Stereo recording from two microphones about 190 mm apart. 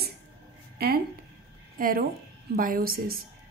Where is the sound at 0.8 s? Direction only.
55° right (ahead or behind).